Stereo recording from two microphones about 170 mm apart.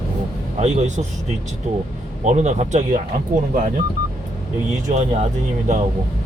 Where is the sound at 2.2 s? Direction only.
45° right (ahead or behind).